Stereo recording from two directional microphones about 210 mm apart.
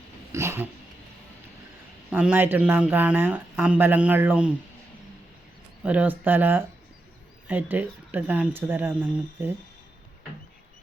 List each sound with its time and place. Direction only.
0.3 s cat: 10° right (ahead or behind)
2.0 s speech: 5° right (ahead or behind)
5.8 s speech: 5° right (ahead or behind)